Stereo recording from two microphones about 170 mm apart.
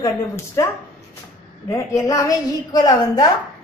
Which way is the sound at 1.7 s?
20° left (ahead or behind).